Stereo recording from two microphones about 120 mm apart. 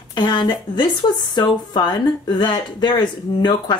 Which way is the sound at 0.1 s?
35° left (ahead or behind).